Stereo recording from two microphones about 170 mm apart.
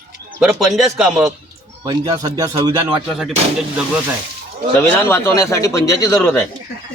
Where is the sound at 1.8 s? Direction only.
25° right (ahead or behind).